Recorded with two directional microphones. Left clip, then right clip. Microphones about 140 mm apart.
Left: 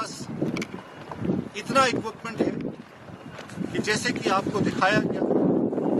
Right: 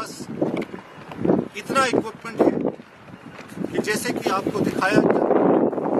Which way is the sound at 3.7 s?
10° right (ahead or behind).